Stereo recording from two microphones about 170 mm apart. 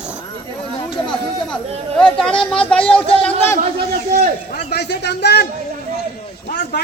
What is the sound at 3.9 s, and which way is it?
Speech, 60° right (ahead or behind).